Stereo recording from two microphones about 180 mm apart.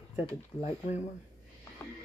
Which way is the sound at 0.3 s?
35° left (ahead or behind).